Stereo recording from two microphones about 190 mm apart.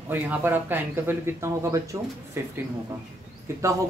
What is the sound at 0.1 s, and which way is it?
Speech, 10° right (ahead or behind).